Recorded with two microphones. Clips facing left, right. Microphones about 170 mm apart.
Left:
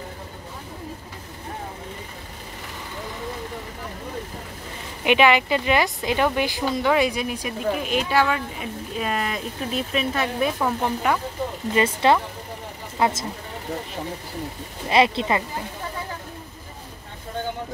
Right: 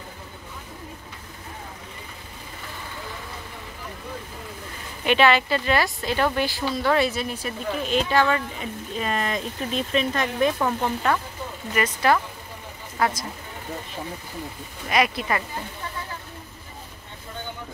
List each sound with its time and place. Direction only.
5.0 s speech: 15° left (ahead or behind)
11.7 s speech: 25° left (ahead or behind)
14.9 s speech: 25° left (ahead or behind)